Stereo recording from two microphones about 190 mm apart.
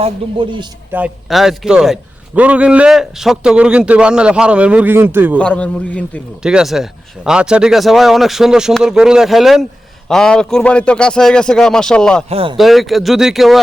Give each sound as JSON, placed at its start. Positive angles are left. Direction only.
{"t": 0.0, "sound": "a man's voice", "side_deg": -25}
{"t": 0.9, "sound": "a man's voice", "side_deg": -5}
{"t": 5.4, "sound": "a man's voice", "side_deg": 5}
{"t": 6.4, "sound": "a man's voice", "side_deg": -5}
{"t": 12.3, "sound": "a man's voice", "side_deg": -30}
{"t": 12.5, "sound": "a man's voice", "side_deg": 0}